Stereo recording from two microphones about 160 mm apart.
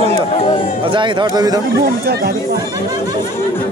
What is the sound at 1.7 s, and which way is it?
Speech, 80° right.